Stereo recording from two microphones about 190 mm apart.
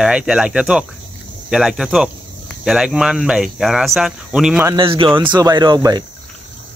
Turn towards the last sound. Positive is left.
turn(degrees=-20)  # may be behind; listen again after turning